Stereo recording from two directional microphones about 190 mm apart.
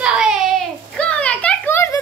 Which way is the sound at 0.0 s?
5° right (ahead or behind).